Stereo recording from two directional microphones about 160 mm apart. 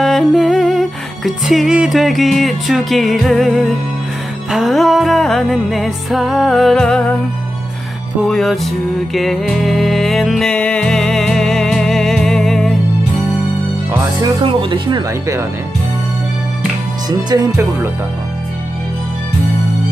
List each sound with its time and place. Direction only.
0.0 s music: centre (ahead or behind)
8.3 s music: centre (ahead or behind)
14.4 s speech: 35° right (ahead or behind)
17.3 s speech: 25° right (ahead or behind)